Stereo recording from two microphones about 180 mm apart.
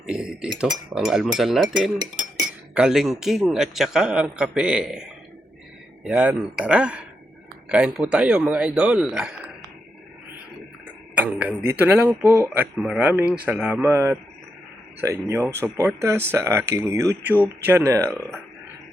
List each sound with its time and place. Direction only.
0.0 s a man's voice: 5° right (ahead or behind)
6.1 s a man's voice: 5° right (ahead or behind)
11.1 s a man's voice: 10° right (ahead or behind)